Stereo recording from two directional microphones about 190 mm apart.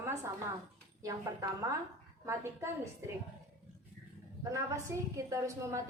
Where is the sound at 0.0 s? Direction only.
15° right (ahead or behind).